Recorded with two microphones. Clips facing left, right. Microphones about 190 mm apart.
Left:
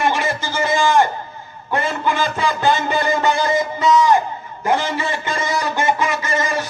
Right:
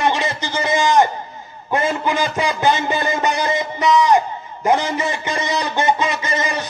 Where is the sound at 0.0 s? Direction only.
20° right (ahead or behind).